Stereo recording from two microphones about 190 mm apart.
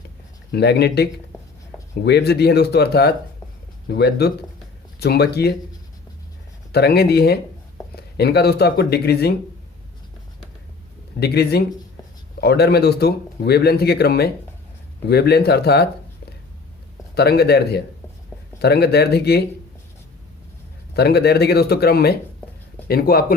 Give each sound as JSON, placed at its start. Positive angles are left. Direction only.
{"t": 0.5, "sound": "speech", "side_deg": 60}
{"t": 2.0, "sound": "speech", "side_deg": 60}
{"t": 6.7, "sound": "speech", "side_deg": 55}
{"t": 11.2, "sound": "speech", "side_deg": 60}
{"t": 17.2, "sound": "speech", "side_deg": 60}
{"t": 20.9, "sound": "speech", "side_deg": 60}